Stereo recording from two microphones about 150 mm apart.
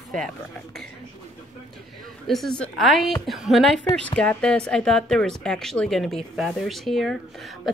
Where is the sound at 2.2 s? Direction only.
Centre (ahead or behind).